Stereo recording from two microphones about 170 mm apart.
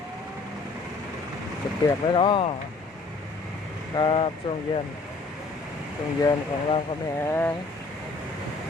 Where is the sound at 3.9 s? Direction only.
30° left (ahead or behind).